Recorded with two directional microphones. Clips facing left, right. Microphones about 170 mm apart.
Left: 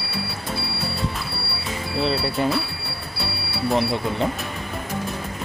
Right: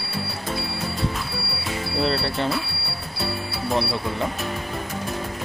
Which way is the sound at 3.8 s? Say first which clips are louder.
Left 2 dB; 20° left (ahead or behind).